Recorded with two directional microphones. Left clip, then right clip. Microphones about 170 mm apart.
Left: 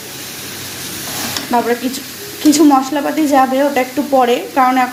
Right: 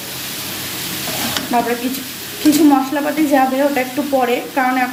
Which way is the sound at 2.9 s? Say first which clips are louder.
Left 2 dB; 35° left (ahead or behind).